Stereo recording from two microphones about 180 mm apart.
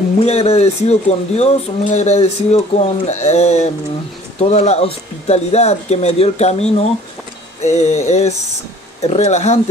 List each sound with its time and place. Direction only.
0.2 s speech: 35° left (ahead or behind)
9.0 s speech: 35° left (ahead or behind)